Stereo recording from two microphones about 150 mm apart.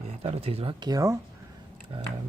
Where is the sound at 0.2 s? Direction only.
40° right (ahead or behind).